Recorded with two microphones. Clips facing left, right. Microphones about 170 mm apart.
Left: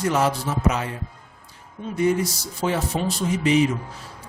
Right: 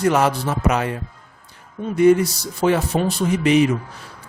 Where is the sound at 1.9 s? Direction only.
65° right (ahead or behind).